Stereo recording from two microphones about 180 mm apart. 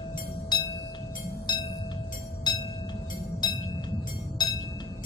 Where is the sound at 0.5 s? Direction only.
25° left (ahead or behind).